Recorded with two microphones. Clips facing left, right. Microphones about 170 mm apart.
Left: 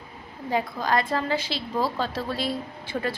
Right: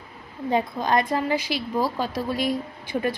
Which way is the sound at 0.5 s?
20° right (ahead or behind).